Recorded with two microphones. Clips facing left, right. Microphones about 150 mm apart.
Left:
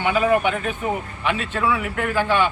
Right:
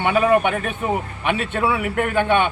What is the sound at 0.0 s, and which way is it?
A man's voice, 60° right (ahead or behind).